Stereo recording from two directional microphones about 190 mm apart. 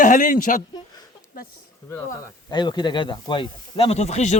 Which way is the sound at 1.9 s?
15° left (ahead or behind).